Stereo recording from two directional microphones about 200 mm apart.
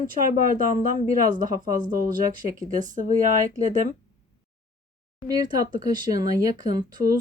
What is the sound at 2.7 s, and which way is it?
Speech, 40° right (ahead or behind).